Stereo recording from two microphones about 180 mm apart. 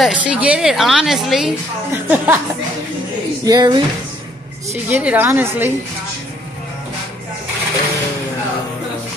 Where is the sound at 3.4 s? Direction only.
25° right (ahead or behind).